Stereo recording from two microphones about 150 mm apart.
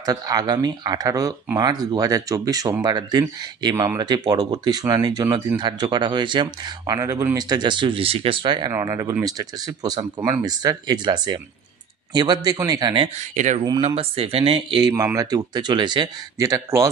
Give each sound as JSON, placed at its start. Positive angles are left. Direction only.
{"t": 0.0, "sound": "speech", "side_deg": -25}
{"t": 8.7, "sound": "speech", "side_deg": -20}
{"t": 13.6, "sound": "speech", "side_deg": -40}